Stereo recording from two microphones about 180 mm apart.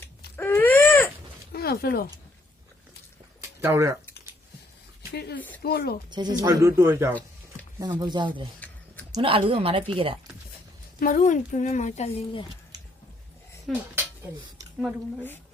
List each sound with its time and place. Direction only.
0.3 s baby cry: 10° left (ahead or behind)
1.5 s speech: 55° left (ahead or behind)
3.6 s speech: 15° right (ahead or behind)
5.1 s speech: 65° left (ahead or behind)
6.1 s speech: 25° right (ahead or behind)
8.6 s a sound: 10° left (ahead or behind)
9.1 s speech: 30° right (ahead or behind)
11.0 s a woman's voice: 45° left (ahead or behind); by 12.5 s 30° left (ahead or behind)